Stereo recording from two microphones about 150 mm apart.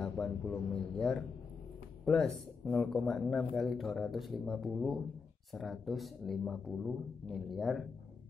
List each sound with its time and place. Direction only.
0.0 s a man's voice: 5° left (ahead or behind)